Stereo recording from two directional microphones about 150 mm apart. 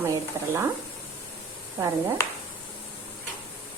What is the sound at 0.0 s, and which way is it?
Speech, 15° right (ahead or behind).